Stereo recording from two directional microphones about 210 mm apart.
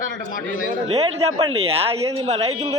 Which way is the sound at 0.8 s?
30° right (ahead or behind).